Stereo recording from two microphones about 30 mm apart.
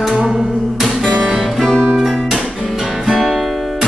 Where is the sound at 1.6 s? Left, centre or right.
Centre.